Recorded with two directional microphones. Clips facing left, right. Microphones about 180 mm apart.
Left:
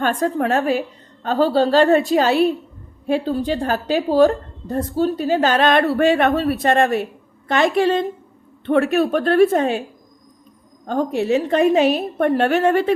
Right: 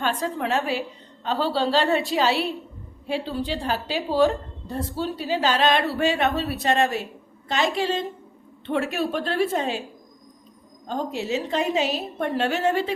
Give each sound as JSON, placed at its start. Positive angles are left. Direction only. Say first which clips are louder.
{"t": 0.0, "sound": "a woman's voice", "louder": "left 6 dB", "side_deg": 45}
{"t": 10.8, "sound": "a woman's voice", "louder": "left 8 dB", "side_deg": 55}